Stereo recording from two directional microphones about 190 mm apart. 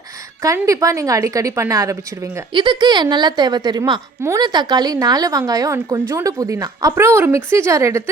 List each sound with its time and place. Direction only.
0.4 s a woman's voice: 15° right (ahead or behind)